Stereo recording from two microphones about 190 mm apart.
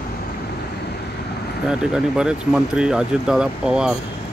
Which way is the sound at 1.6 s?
5° right (ahead or behind).